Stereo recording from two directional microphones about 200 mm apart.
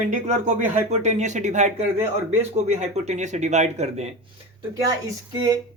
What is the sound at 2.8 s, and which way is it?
Speech, 35° right (ahead or behind).